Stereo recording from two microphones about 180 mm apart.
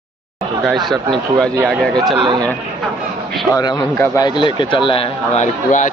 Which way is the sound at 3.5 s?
25° left (ahead or behind).